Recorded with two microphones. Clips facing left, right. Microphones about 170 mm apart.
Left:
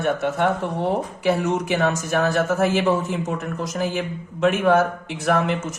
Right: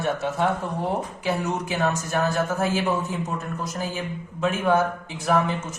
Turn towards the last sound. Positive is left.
turn(degrees=75)  # may be behind; listen again after turning